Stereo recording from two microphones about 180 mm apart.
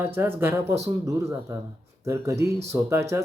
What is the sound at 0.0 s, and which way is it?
Speech, 10° right (ahead or behind).